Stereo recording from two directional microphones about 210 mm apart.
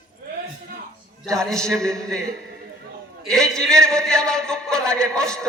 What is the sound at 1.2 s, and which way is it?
A man's voice, centre (ahead or behind).